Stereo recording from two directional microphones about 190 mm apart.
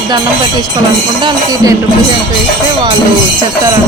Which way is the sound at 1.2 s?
25° right (ahead or behind).